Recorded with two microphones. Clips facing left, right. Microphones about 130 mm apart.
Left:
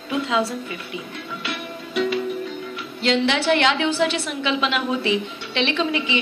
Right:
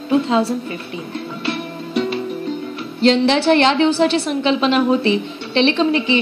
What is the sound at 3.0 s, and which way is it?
A woman's voice, 35° right (ahead or behind).